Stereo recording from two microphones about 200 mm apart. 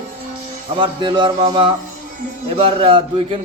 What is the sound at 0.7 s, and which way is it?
A man's voice, 25° right (ahead or behind).